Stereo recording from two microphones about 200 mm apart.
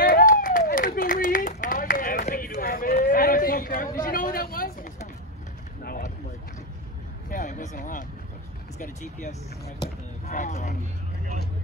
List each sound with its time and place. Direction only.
0.0 s clapping: 45° left (ahead or behind)
5.9 s a sound: 50° left (ahead or behind)
7.2 s vehicle: 40° left (ahead or behind)
8.7 s speech: 35° left (ahead or behind)